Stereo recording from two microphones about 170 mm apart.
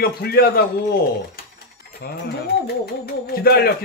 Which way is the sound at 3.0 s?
65° left (ahead or behind).